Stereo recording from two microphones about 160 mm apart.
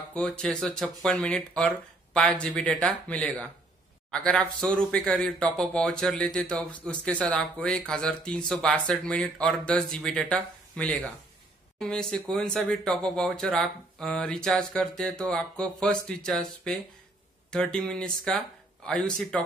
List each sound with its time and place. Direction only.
0.1 s speech: 5° left (ahead or behind)